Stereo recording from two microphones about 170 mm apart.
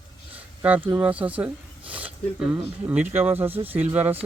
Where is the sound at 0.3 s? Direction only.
10° right (ahead or behind).